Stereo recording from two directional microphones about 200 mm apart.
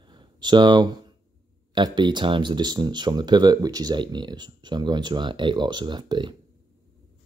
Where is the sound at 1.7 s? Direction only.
25° right (ahead or behind).